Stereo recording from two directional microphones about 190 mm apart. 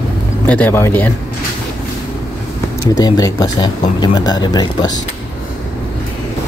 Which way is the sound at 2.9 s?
20° left (ahead or behind).